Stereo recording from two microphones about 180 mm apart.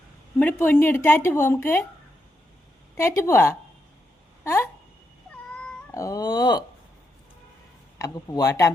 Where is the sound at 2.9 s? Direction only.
15° left (ahead or behind).